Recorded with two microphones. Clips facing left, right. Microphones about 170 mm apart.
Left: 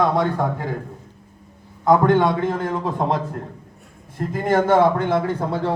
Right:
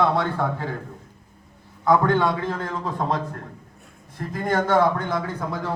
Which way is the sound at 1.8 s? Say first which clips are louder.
Left 3 dB; 20° left (ahead or behind).